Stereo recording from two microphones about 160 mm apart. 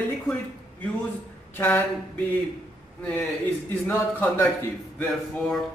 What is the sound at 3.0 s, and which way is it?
A man's voice, 5° left (ahead or behind).